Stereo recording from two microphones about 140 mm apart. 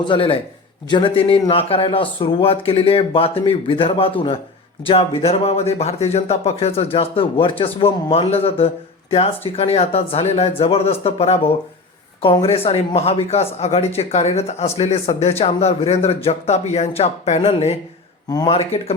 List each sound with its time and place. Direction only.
0.0 s a man's voice: 35° left (ahead or behind)